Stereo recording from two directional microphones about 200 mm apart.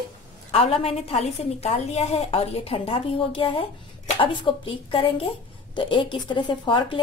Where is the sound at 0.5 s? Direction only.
30° left (ahead or behind).